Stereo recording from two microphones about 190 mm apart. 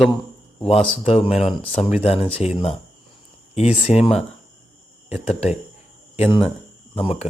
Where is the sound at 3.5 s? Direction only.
35° left (ahead or behind).